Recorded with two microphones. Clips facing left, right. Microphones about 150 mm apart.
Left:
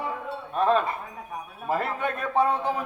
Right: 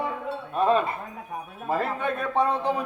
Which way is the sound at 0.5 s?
Centre (ahead or behind).